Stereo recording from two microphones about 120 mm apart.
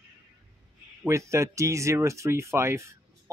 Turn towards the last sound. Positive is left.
turn(degrees=-25)  # may be behind; listen again after turning